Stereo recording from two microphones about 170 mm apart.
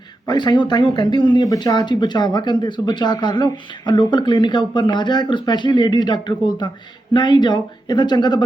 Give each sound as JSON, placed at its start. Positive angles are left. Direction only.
{"t": 0.3, "sound": "speech", "side_deg": 25}